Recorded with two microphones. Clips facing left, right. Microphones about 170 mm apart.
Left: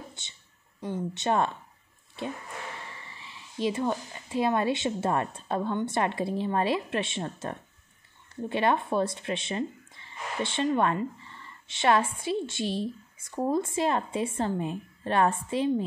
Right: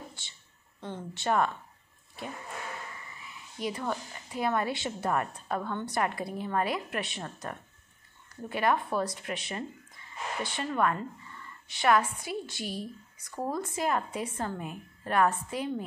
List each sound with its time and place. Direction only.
0.2 s speech: 20° left (ahead or behind)
2.9 s speech: 30° left (ahead or behind)